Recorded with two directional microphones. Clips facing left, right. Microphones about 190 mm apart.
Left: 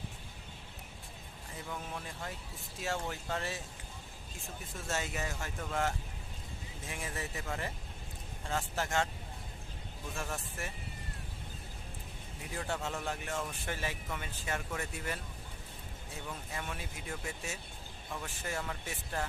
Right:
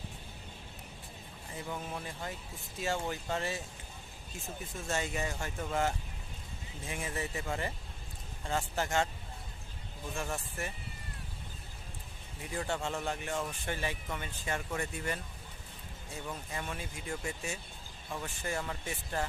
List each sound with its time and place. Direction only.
1.6 s speech: 10° right (ahead or behind)
4.9 s speech: centre (ahead or behind)
8.4 s speech: centre (ahead or behind)
10.2 s speech: centre (ahead or behind)
12.5 s speech: centre (ahead or behind)
16.6 s speech: centre (ahead or behind)